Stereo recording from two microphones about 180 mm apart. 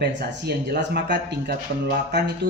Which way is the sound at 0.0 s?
65° right (ahead or behind).